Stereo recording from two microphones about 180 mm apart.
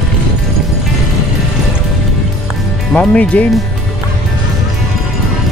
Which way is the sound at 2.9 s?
5° left (ahead or behind).